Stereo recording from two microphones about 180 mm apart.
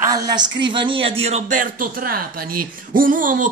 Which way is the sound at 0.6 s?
30° right (ahead or behind).